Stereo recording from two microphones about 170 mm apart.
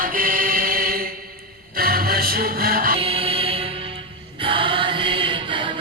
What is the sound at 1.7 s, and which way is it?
Music, 60° right (ahead or behind).